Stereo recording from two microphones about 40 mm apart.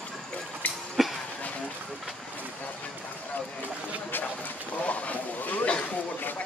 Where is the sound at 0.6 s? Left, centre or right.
Left.